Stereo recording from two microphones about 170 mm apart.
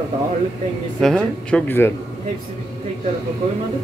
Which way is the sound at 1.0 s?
5° left (ahead or behind).